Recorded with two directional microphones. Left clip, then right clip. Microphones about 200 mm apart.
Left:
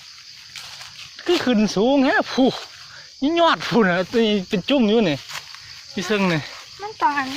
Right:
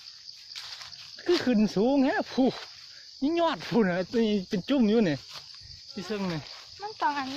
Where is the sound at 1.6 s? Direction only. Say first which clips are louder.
Left 7 dB; 30° right (ahead or behind).